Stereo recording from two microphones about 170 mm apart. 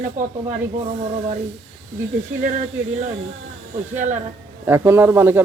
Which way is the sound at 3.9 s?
45° right (ahead or behind).